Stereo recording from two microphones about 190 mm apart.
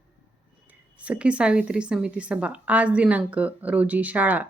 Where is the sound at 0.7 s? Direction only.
5° right (ahead or behind).